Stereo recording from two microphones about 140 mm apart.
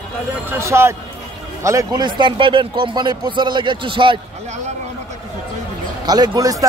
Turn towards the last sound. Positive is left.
turn(degrees=-25)  # may be behind; listen again after turning